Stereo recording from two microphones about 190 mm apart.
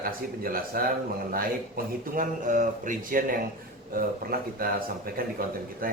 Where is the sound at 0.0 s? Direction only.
50° right (ahead or behind).